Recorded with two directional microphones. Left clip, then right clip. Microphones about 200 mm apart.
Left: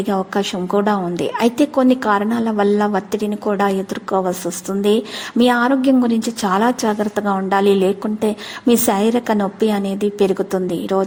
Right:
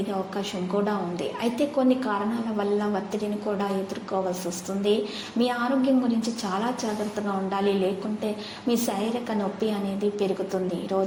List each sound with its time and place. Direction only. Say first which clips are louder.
0.1 s a woman's voice: left 10 dB; 50° left (ahead or behind)
5.4 s a woman's voice: left 10 dB; 45° left (ahead or behind)